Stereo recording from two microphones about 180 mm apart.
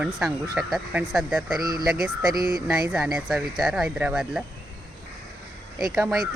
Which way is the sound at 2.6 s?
5° right (ahead or behind).